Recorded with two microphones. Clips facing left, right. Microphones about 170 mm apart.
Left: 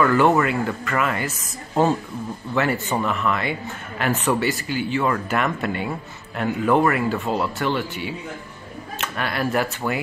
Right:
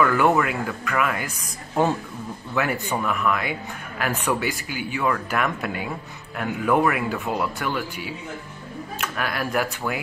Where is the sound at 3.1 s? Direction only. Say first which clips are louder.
Left 1 dB; 5° right (ahead or behind).